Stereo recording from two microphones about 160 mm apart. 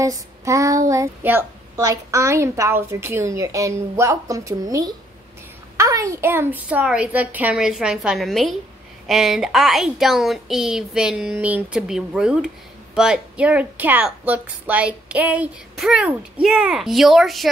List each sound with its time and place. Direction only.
0.0 s a child's voice: 20° right (ahead or behind); by 17.5 s centre (ahead or behind)